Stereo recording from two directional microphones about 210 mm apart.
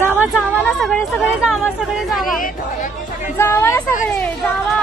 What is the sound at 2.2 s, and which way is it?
Speech, 40° left (ahead or behind).